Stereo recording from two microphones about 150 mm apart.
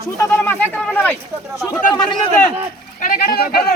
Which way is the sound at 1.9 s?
30° left (ahead or behind).